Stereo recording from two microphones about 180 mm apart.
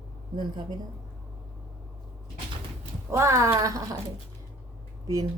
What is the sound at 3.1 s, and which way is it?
Speech, 15° right (ahead or behind).